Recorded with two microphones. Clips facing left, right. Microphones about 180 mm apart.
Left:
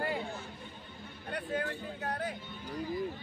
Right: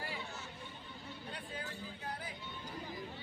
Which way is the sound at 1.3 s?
70° left (ahead or behind).